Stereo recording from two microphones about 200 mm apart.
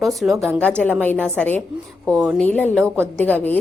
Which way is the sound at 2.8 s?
10° right (ahead or behind).